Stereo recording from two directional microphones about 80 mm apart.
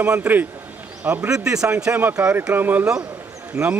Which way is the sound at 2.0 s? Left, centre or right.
Right.